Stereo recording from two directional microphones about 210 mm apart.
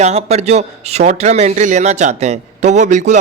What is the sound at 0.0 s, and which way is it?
A man's voice, 30° right (ahead or behind).